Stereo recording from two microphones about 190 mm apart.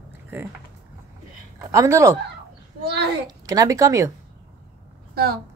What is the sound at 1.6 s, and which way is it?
Speech, 15° right (ahead or behind).